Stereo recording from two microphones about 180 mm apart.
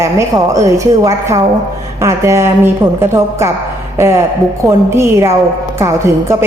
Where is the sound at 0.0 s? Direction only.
15° right (ahead or behind).